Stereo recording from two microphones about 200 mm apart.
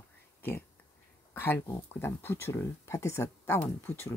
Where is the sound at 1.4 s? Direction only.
10° left (ahead or behind).